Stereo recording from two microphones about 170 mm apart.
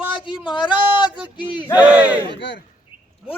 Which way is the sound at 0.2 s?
30° left (ahead or behind).